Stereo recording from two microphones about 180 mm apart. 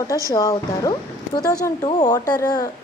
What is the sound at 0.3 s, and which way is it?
A woman's voice, 20° left (ahead or behind).